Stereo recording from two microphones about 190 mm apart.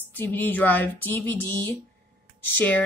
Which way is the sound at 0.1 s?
10° left (ahead or behind).